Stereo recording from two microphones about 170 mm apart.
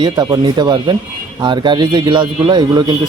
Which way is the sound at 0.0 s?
25° right (ahead or behind).